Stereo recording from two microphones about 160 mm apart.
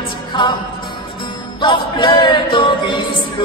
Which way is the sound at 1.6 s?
30° left (ahead or behind).